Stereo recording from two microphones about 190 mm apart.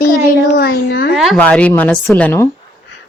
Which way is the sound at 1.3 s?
5° left (ahead or behind).